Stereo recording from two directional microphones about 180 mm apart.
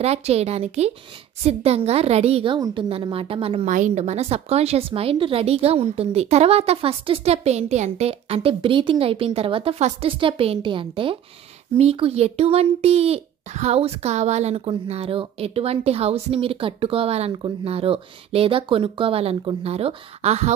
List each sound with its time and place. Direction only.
0.0 s speech: 35° right (ahead or behind)
3.6 s speech: 45° right (ahead or behind)